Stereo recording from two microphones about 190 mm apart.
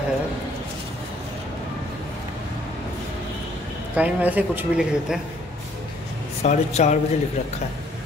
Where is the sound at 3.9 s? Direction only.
10° right (ahead or behind).